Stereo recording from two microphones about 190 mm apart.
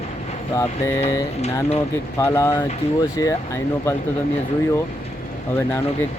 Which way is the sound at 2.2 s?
15° left (ahead or behind).